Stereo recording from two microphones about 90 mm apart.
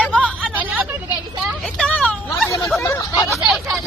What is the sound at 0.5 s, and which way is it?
Vehicle, 20° right (ahead or behind).